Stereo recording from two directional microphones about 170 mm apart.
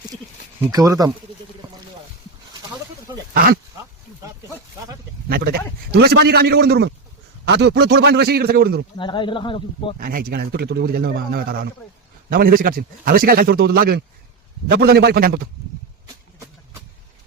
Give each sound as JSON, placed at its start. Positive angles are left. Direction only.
{"t": 0.7, "sound": "speech", "side_deg": -20}
{"t": 3.3, "sound": "a man's voice", "side_deg": -60}
{"t": 3.8, "sound": "a sound", "side_deg": -20}
{"t": 5.3, "sound": "a man's voice", "side_deg": -65}
{"t": 9.0, "sound": "speech", "side_deg": 30}
{"t": 10.0, "sound": "a man's voice", "side_deg": -55}